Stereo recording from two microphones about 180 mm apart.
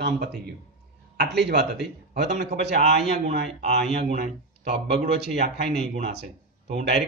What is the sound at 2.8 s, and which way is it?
Speech, 35° right (ahead or behind).